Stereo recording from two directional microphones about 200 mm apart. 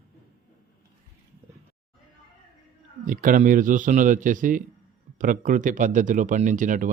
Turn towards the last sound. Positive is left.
turn(degrees=-40)  # may be behind; listen again after turning